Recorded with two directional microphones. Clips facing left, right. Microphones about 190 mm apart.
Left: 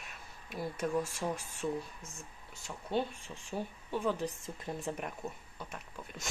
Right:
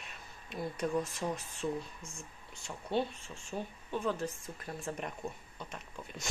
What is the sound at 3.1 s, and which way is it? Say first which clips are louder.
Speech: left 1 dB; 15° left (ahead or behind).